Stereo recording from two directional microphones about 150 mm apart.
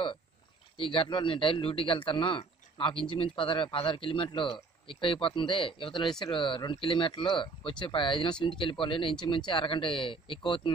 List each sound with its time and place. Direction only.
0.7 s a man's voice: 35° left (ahead or behind)